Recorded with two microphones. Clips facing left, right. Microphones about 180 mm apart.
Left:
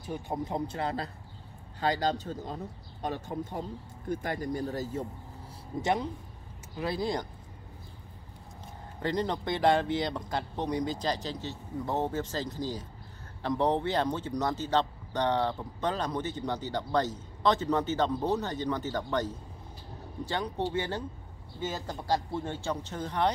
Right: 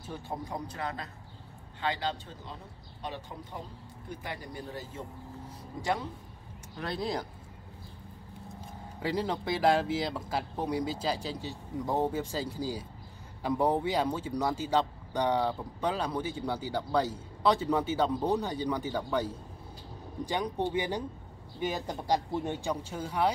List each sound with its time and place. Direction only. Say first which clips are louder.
0.0 s a man's voice: left 4 dB; 15° left (ahead or behind); by 5.0 s 40° left (ahead or behind)
5.8 s a man's voice: left 3 dB; 20° left (ahead or behind)
6.8 s speech: left 2 dB; centre (ahead or behind)
9.0 s speech: left 1 dB; 5° right (ahead or behind)